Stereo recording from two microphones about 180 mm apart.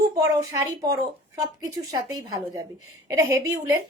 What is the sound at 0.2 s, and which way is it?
A woman's voice, 15° right (ahead or behind).